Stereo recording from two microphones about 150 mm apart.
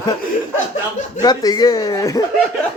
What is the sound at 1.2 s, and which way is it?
Speech, 25° left (ahead or behind).